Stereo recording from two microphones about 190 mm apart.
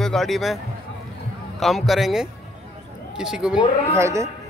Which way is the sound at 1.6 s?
Centre (ahead or behind).